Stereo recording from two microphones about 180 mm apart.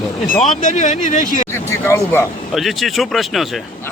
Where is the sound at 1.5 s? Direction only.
15° left (ahead or behind).